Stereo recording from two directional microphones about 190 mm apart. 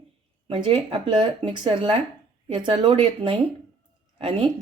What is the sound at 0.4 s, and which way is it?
Speech, 30° right (ahead or behind).